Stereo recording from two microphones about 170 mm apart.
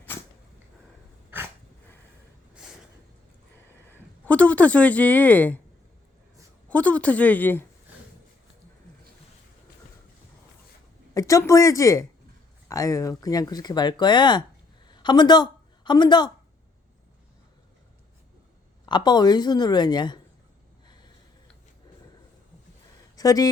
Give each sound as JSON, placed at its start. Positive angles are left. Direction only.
{"t": 3.9, "sound": "speech", "side_deg": 10}
{"t": 6.7, "sound": "a woman's voice", "side_deg": 10}
{"t": 11.1, "sound": "a woman's voice", "side_deg": 20}
{"t": 18.9, "sound": "speech", "side_deg": 25}
{"t": 20.8, "sound": "a sound", "side_deg": 25}
{"t": 23.1, "sound": "speech", "side_deg": 20}